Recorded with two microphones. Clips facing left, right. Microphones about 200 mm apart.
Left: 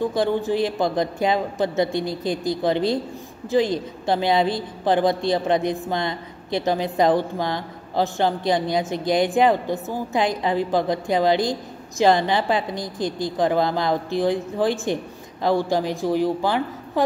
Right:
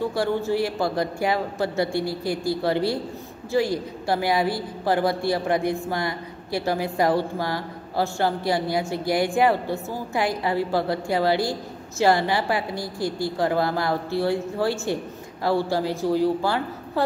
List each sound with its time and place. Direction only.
0.0 s a woman's voice: 20° left (ahead or behind)